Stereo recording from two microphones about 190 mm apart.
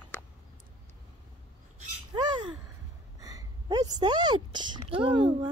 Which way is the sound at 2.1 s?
25° right (ahead or behind).